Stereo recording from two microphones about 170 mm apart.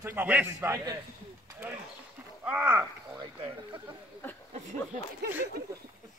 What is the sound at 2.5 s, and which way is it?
Speech, 10° right (ahead or behind).